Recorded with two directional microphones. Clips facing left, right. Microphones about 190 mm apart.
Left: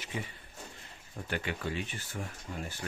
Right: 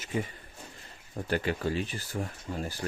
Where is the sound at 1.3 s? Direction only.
40° right (ahead or behind).